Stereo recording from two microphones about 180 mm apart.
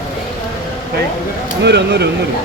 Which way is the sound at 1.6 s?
70° right (ahead or behind).